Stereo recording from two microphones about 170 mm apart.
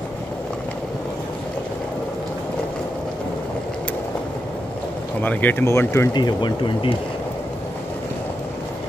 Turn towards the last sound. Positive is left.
turn(degrees=30)  # may be behind; listen again after turning